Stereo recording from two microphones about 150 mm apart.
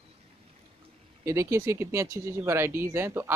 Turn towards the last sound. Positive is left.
turn(degrees=-15)  # may be behind; listen again after turning